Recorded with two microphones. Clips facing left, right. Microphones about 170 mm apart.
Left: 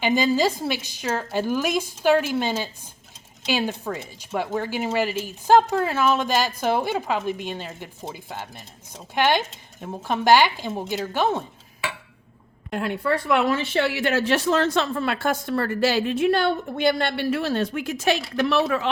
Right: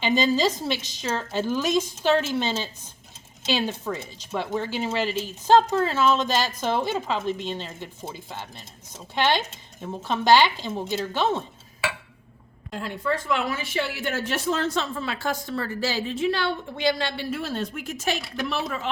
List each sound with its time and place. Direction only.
0.0 s speech: 10° left (ahead or behind)
12.7 s a woman's voice: 65° left (ahead or behind)